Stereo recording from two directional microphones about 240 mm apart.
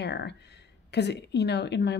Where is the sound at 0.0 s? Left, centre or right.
Left.